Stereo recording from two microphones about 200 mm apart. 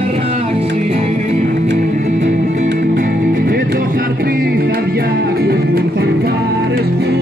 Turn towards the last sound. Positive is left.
turn(degrees=-55)  # may be behind; listen again after turning